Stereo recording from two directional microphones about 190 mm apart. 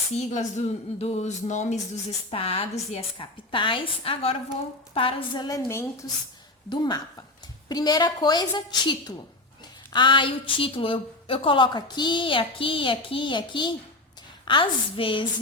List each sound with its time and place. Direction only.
0.1 s a woman's voice: 35° left (ahead or behind)